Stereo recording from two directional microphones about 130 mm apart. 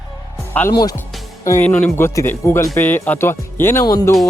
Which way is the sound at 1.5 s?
15° left (ahead or behind).